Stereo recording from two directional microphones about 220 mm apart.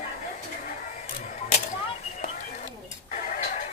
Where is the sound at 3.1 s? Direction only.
35° left (ahead or behind).